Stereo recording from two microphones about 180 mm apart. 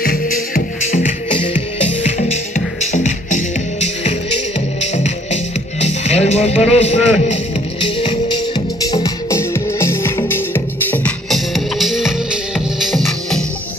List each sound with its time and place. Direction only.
0.0 s music: 55° left (ahead or behind); by 7.3 s 40° left (ahead or behind)
8.0 s music: 25° left (ahead or behind); by 13.4 s centre (ahead or behind)